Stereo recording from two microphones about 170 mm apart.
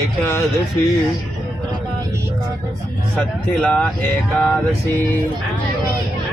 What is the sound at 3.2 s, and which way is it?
Speech, 5° left (ahead or behind).